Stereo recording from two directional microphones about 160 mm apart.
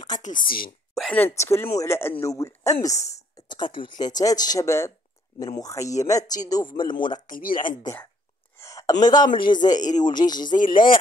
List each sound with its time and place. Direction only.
0.9 s speech: 5° left (ahead or behind); by 7.2 s 30° left (ahead or behind)
7.2 s speech: 60° left (ahead or behind)
7.8 s speech: 15° left (ahead or behind)
8.5 s a sound: 20° left (ahead or behind)
9.0 s speech: 25° left (ahead or behind)
10.6 s speech: 60° left (ahead or behind)